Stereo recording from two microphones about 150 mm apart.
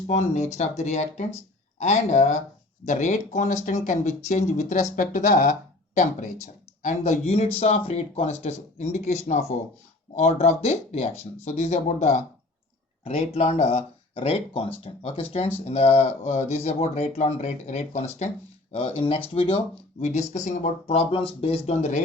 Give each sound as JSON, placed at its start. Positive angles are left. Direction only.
{"t": 0.1, "sound": "speech", "side_deg": 50}
{"t": 11.1, "sound": "speech", "side_deg": 15}
{"t": 11.4, "sound": "speech", "side_deg": 50}
{"t": 20.0, "sound": "speech", "side_deg": 50}